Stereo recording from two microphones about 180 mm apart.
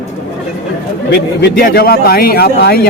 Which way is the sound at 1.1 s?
65° left (ahead or behind).